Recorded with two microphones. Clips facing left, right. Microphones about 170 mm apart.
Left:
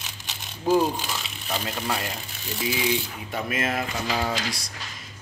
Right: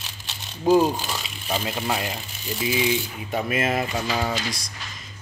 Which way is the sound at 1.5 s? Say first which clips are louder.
Right 3 dB; 10° right (ahead or behind).